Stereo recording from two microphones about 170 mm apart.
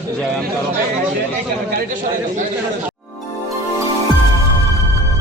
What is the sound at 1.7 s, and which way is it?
Speech, 50° right (ahead or behind).